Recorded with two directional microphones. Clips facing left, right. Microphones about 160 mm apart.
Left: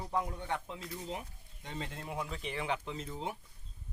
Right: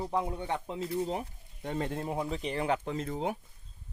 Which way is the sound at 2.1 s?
35° right (ahead or behind).